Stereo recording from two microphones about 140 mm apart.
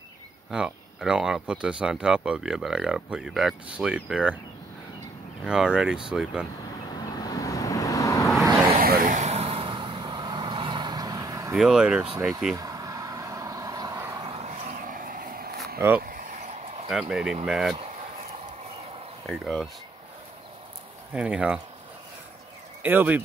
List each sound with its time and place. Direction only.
0.5 s speech: 5° right (ahead or behind)
5.4 s speech: 5° right (ahead or behind)
6.9 s vehicle: 30° left (ahead or behind)
8.7 s vehicle: 85° right; by 11.5 s 25° right (ahead or behind)
11.5 s speech: 5° right (ahead or behind)
12.5 s vehicle: 25° right (ahead or behind)
14.2 s a sound: 45° right (ahead or behind)
17.1 s speech: 5° right (ahead or behind)
19.2 s speech: centre (ahead or behind)
21.1 s speech: 5° right (ahead or behind)
22.8 s speech: 15° right (ahead or behind)